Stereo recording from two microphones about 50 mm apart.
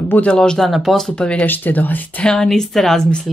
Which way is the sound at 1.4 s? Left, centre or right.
Left.